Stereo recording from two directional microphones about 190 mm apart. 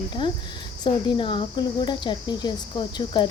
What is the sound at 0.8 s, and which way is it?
A woman's voice, 25° left (ahead or behind).